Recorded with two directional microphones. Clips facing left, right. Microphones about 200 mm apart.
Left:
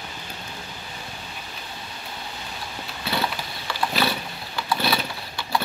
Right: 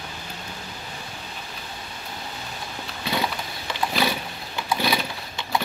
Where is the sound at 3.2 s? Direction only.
15° right (ahead or behind).